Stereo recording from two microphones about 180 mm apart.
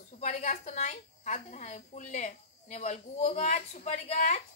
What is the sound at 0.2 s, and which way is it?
A woman's voice, 40° left (ahead or behind).